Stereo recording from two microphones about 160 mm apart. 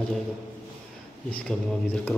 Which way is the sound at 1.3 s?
5° left (ahead or behind).